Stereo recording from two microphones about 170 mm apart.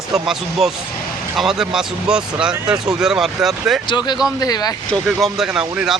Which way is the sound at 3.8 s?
25° left (ahead or behind).